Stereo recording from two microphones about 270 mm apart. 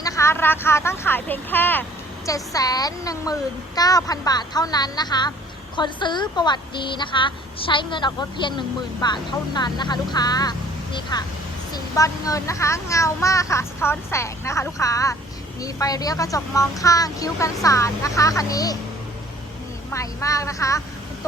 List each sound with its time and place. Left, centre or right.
0.0 s a woman's voice: centre
19.9 s a woman's voice: centre